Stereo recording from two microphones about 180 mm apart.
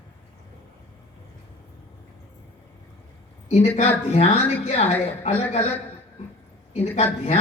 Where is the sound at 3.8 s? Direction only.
35° left (ahead or behind).